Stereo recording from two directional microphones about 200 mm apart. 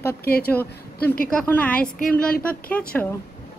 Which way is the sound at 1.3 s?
10° left (ahead or behind).